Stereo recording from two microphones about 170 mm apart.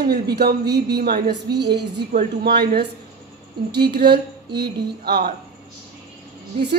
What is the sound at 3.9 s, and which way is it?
A man's voice, 70° right (ahead or behind).